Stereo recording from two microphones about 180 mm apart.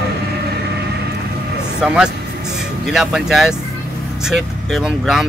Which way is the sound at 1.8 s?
5° right (ahead or behind).